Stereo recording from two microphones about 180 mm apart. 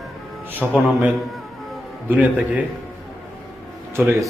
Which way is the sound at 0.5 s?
5° right (ahead or behind).